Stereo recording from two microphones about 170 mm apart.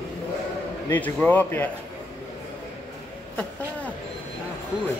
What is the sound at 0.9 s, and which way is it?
Speech, 10° left (ahead or behind).